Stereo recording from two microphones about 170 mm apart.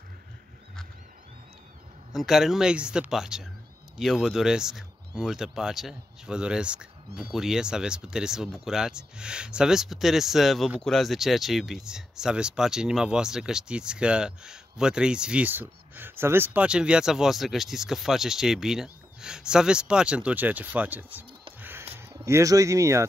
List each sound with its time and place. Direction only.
2.1 s speech: centre (ahead or behind)
21.5 s a sound: 10° right (ahead or behind)
21.9 s speech: 15° right (ahead or behind)